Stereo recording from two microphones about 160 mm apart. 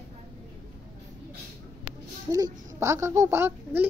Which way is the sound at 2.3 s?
20° right (ahead or behind).